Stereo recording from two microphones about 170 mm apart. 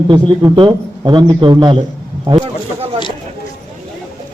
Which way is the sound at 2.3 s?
30° right (ahead or behind).